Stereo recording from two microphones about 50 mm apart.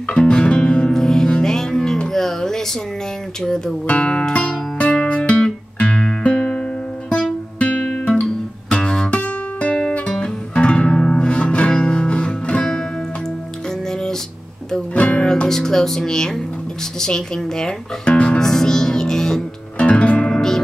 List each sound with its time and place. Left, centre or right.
0.1 s music: left
3.4 s speech: centre
3.8 s music: left
15.0 s music: left
17.0 s speech: centre
18.1 s music: left
18.4 s music: centre
19.9 s music: left